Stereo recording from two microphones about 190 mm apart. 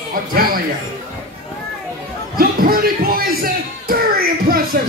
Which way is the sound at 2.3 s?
50° right (ahead or behind).